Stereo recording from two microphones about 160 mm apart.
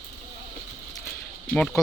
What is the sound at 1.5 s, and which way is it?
Speech, 5° left (ahead or behind).